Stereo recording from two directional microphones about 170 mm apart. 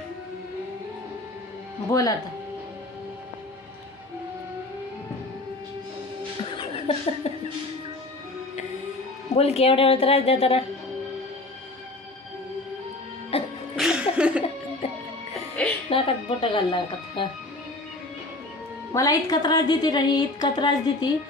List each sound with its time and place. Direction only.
1.9 s a woman's voice: 20° left (ahead or behind)
6.5 s laughter: 30° left (ahead or behind)
9.3 s speech: 40° left (ahead or behind)
13.3 s music: 35° left (ahead or behind)
13.7 s music: 5° right (ahead or behind)
15.3 s music: 5° left (ahead or behind)
15.9 s speech: 30° left (ahead or behind)
18.9 s a woman's voice: 20° left (ahead or behind)